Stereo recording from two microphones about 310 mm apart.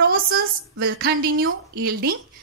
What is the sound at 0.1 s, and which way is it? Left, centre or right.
A woman's voice, right.